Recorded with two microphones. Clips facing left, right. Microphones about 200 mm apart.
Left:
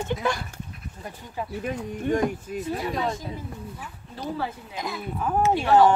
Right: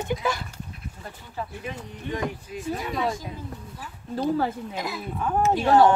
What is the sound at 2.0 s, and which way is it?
Speech, 50° left (ahead or behind).